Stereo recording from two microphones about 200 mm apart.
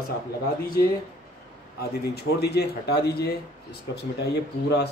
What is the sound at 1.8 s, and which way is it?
A man's voice, 55° left (ahead or behind).